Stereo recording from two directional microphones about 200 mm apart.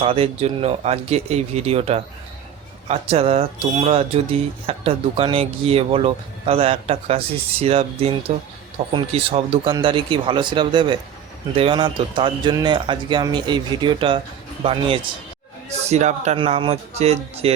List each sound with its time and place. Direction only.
0.0 s speech: 30° right (ahead or behind)